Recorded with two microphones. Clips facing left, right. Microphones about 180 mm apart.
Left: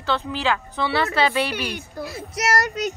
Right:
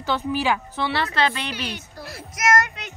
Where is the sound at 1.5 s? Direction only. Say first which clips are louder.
Left 3 dB; 55° left (ahead or behind).